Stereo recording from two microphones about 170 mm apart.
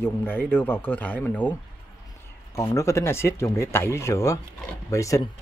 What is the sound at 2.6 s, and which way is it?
Speech, 20° left (ahead or behind).